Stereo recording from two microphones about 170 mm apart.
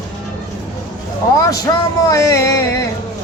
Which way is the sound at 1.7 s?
20° left (ahead or behind).